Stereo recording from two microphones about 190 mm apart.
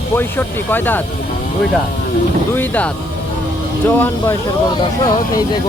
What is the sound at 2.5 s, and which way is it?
Speech, 10° left (ahead or behind).